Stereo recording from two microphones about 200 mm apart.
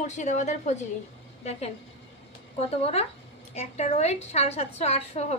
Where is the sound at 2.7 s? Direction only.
30° left (ahead or behind).